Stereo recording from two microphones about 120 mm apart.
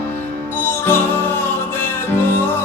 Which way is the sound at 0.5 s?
20° left (ahead or behind).